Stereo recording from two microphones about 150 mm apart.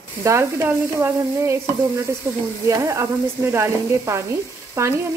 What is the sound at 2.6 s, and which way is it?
Sizzle, 20° right (ahead or behind).